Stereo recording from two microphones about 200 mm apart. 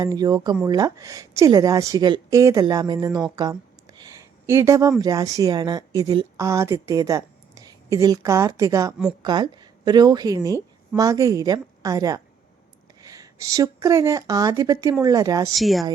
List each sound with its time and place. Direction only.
0.0 s a woman's voice: 20° right (ahead or behind)
15.5 s speech: centre (ahead or behind)